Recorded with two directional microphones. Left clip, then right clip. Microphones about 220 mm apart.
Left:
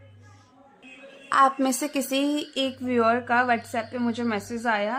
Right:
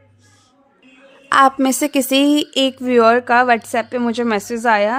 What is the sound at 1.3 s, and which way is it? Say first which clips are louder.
Speech: right 8 dB; 40° right (ahead or behind).